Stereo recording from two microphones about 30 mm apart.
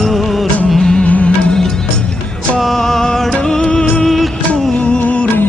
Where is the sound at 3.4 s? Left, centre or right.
Left.